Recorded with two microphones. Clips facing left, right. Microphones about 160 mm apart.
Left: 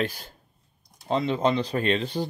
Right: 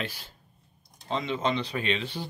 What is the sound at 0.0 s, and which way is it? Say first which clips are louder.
Speech: left 7 dB; 45° left (ahead or behind).